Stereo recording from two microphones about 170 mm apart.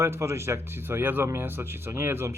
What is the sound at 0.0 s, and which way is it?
Speech, 15° right (ahead or behind).